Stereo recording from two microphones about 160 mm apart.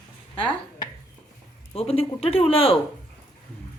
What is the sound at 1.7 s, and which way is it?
Speech, 40° left (ahead or behind).